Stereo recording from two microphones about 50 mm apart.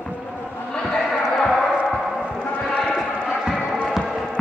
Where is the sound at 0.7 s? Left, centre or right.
Centre.